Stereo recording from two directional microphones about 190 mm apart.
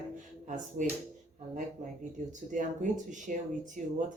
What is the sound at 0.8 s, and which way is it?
Speech, 40° right (ahead or behind).